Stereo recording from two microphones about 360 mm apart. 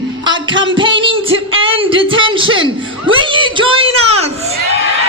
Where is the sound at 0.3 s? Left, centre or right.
Centre.